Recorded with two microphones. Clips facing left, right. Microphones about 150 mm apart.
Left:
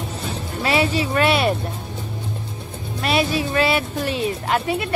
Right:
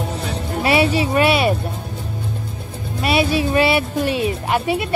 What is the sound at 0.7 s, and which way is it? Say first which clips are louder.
Speech: right 3 dB; 10° right (ahead or behind).